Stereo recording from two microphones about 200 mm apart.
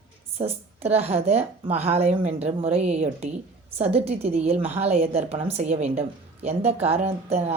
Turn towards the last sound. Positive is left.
turn(degrees=-30)  # may be behind; listen again after turning